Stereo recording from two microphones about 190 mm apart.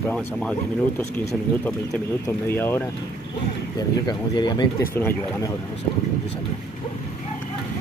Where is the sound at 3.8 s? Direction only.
20° left (ahead or behind).